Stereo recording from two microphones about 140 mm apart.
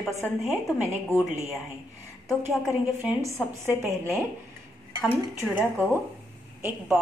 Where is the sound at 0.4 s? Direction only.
20° right (ahead or behind).